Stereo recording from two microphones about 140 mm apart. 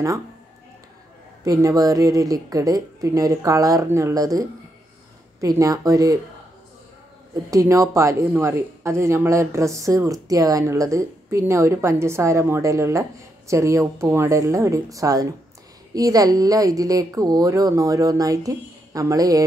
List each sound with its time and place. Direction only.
1.4 s a woman's voice: 25° right (ahead or behind)
7.5 s a woman's voice: 20° right (ahead or behind)